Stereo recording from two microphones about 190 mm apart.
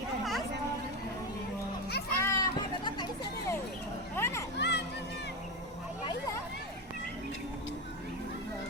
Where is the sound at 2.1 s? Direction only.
15° left (ahead or behind).